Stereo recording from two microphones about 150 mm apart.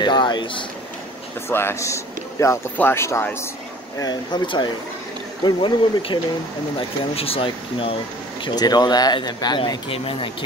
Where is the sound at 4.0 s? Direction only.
30° left (ahead or behind).